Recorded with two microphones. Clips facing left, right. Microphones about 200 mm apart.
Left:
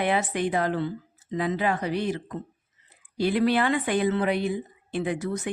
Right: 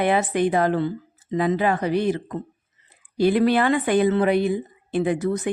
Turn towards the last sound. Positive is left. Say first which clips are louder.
# right 6 dB
turn(degrees=-50)  # may be behind; listen again after turning